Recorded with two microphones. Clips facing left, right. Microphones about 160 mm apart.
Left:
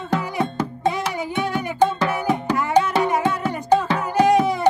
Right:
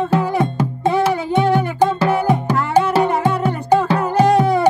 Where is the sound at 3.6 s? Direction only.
10° right (ahead or behind).